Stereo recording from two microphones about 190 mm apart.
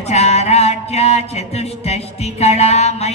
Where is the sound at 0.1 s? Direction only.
35° left (ahead or behind).